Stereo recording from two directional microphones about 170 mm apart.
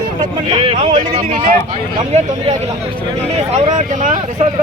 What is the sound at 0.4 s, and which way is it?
Speech, 30° right (ahead or behind).